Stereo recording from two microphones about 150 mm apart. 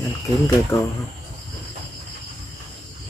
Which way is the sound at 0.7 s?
20° left (ahead or behind).